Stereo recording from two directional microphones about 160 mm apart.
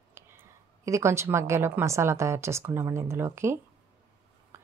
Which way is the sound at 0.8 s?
20° right (ahead or behind).